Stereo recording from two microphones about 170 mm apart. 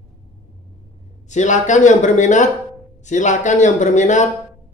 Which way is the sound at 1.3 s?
45° left (ahead or behind).